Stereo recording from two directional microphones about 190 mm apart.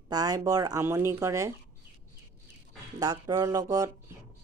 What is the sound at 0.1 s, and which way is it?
Speech, 20° right (ahead or behind).